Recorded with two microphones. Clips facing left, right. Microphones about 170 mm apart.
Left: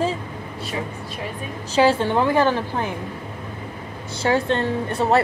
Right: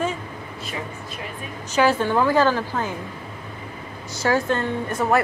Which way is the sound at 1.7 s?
30° left (ahead or behind).